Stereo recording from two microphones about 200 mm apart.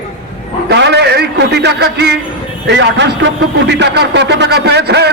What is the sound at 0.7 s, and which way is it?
A man's voice, 60° right (ahead or behind).